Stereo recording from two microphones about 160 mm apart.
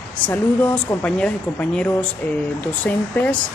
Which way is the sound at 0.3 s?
10° left (ahead or behind).